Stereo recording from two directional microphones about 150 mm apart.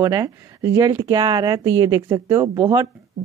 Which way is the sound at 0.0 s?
20° right (ahead or behind).